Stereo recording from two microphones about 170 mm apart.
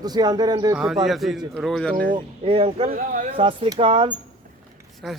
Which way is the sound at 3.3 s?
35° right (ahead or behind).